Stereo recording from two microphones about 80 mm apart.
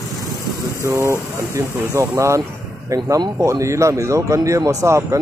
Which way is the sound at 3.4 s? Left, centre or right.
Right.